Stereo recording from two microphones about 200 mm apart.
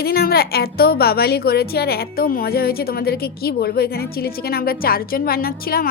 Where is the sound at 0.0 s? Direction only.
50° left (ahead or behind).